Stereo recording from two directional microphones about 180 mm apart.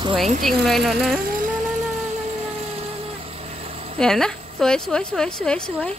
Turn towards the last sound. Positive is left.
turn(degrees=5)  # may be behind; listen again after turning